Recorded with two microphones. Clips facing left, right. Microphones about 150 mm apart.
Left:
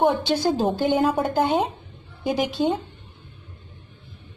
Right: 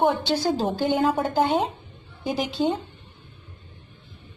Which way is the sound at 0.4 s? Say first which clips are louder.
Left 2 dB; 15° left (ahead or behind).